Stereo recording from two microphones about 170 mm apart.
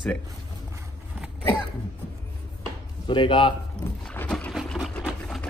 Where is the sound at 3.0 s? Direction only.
30° left (ahead or behind).